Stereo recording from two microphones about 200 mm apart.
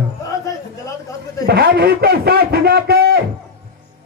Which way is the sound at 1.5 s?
50° right (ahead or behind).